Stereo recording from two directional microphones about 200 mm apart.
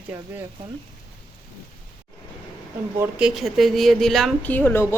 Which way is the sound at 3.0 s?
5° right (ahead or behind).